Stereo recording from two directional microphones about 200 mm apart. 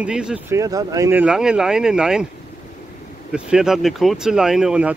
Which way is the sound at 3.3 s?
5° right (ahead or behind).